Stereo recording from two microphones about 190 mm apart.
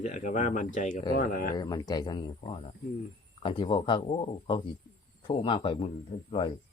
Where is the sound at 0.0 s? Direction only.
40° left (ahead or behind).